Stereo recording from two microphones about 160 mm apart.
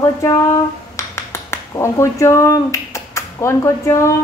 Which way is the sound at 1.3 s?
15° left (ahead or behind).